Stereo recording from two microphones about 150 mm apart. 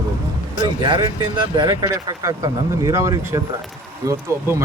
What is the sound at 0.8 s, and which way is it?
Speech, 30° right (ahead or behind).